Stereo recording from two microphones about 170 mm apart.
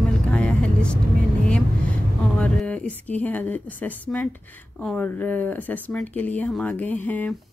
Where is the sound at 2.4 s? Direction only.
5° left (ahead or behind).